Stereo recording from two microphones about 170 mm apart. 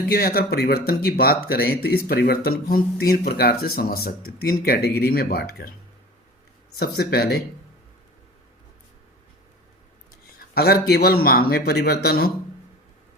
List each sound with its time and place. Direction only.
0.1 s speech: 65° left (ahead or behind)
6.7 s speech: 65° left (ahead or behind)
10.5 s speech: 65° left (ahead or behind)